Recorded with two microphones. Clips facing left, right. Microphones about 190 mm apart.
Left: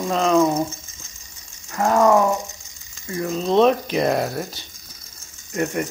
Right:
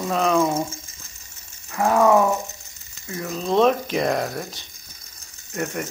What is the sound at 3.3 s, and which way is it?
Speech, centre (ahead or behind).